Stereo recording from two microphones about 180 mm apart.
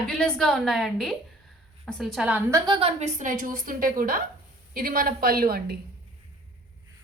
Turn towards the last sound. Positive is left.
turn(degrees=-55)  # may be behind; listen again after turning